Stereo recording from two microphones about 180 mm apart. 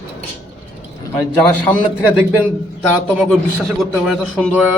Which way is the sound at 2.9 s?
5° right (ahead or behind).